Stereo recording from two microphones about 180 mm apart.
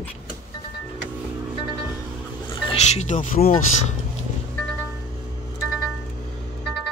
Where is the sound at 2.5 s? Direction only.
30° left (ahead or behind); by 3.9 s 45° left (ahead or behind).